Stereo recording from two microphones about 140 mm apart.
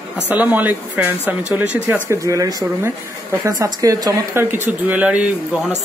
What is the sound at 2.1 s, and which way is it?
Speech, 25° right (ahead or behind).